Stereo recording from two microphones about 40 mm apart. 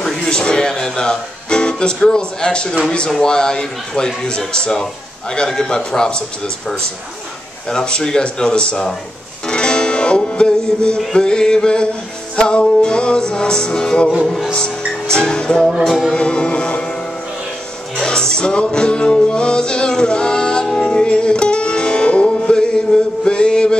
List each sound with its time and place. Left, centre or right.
0.2 s music: left
2.0 s speech: left
9.5 s music: left
11.1 s speech: centre
14.2 s music: centre
15.0 s speech: left
18.0 s music: left
23.2 s mantra: left